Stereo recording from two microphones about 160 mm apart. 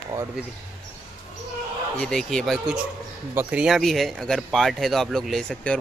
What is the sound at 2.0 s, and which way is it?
Speech, 5° left (ahead or behind).